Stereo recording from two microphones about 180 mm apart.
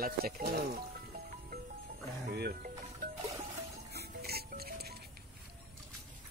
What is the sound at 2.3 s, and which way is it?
Music, 60° right (ahead or behind).